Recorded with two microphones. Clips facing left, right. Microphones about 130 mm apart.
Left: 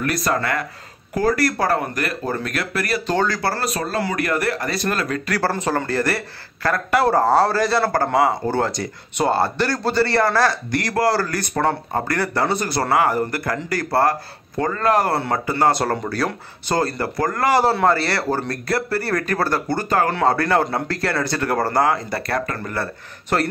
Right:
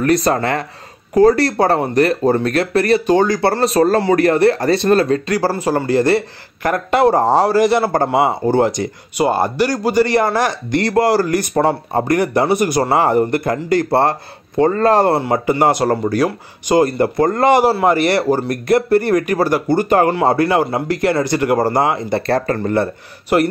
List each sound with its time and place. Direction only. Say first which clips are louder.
0.0 s speech: right 7 dB; 35° right (ahead or behind)
3.1 s speech: right 7 dB; 20° right (ahead or behind)
5.5 s speech: right 5 dB; 10° right (ahead or behind); by 15.1 s 30° right (ahead or behind)
15.1 s speech: right 5 dB; 20° right (ahead or behind)
23.3 s speech: right 6 dB; 10° right (ahead or behind)